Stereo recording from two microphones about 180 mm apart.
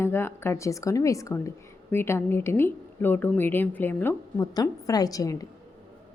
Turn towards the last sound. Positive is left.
turn(degrees=20)  # may be behind; listen again after turning